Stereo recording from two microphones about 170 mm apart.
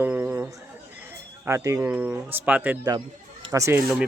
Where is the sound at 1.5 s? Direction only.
20° right (ahead or behind).